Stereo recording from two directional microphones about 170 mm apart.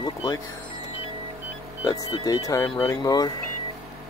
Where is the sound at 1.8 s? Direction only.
20° left (ahead or behind).